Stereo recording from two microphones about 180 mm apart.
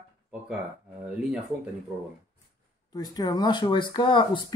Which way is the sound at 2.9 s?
20° left (ahead or behind).